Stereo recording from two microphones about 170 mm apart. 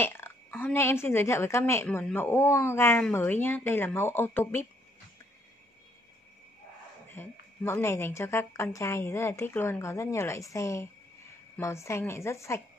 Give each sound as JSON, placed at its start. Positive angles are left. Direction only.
{"t": 0.0, "sound": "a woman's voice", "side_deg": 15}
{"t": 7.1, "sound": "a woman's voice", "side_deg": 15}